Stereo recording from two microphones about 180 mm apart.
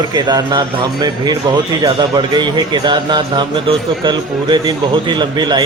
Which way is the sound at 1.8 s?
25° right (ahead or behind).